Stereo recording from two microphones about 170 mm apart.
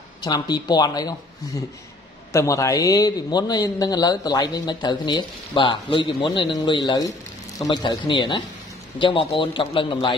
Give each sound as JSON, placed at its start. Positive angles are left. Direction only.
{"t": 0.2, "sound": "a man's voice", "side_deg": 25}